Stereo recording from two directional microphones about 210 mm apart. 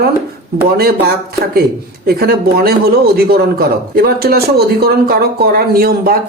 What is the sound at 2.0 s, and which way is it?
Speech, 45° right (ahead or behind).